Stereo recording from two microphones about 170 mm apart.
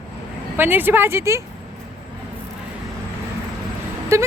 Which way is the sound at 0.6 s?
10° right (ahead or behind).